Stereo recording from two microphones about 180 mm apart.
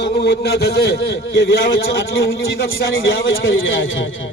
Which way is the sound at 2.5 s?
90° left.